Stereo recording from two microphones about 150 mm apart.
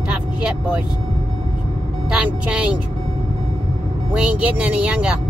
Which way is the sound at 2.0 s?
5° right (ahead or behind).